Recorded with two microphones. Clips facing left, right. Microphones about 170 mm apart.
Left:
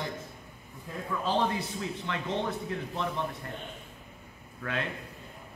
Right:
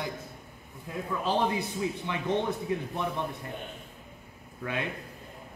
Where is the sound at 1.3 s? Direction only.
10° right (ahead or behind).